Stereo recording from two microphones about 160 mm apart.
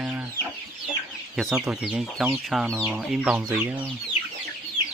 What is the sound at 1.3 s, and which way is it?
Chicken, centre (ahead or behind).